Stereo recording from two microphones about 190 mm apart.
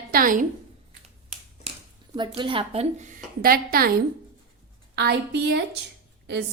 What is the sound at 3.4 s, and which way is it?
Speech, 50° right (ahead or behind).